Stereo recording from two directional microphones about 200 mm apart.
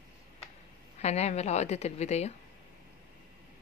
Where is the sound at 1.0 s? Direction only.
35° left (ahead or behind).